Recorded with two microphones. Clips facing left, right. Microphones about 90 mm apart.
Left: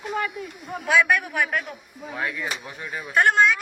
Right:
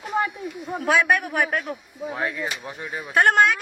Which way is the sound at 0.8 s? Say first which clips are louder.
Even; 35° right (ahead or behind).